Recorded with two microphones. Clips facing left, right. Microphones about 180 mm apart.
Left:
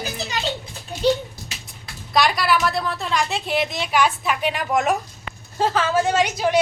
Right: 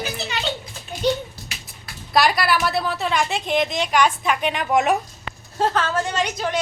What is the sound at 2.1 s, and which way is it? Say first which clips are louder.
A woman's voice: even; centre (ahead or behind).